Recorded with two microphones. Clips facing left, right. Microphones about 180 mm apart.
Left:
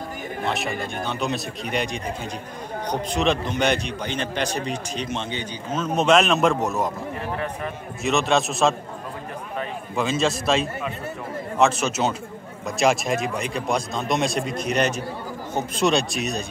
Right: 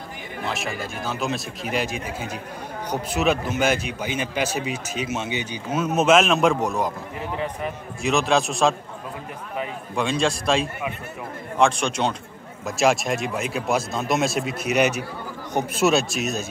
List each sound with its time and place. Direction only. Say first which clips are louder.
0.5 s a man's voice: left 2 dB; centre (ahead or behind)
7.3 s speech: right 4 dB; 20° right (ahead or behind)
8.0 s a man's voice: even; centre (ahead or behind)
9.9 s a man's voice: even; centre (ahead or behind)